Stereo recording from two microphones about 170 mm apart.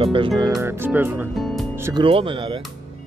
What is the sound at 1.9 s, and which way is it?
Speech, 30° right (ahead or behind).